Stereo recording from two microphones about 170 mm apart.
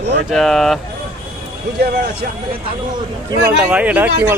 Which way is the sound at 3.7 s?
10° right (ahead or behind).